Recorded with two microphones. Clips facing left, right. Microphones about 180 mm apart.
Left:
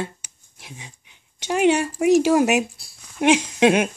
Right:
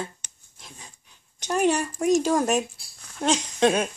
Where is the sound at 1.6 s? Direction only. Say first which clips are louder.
Left 5 dB; 70° left (ahead or behind).